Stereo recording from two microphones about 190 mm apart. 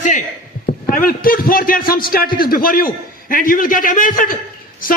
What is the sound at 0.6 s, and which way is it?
A man's voice, 50° left (ahead or behind).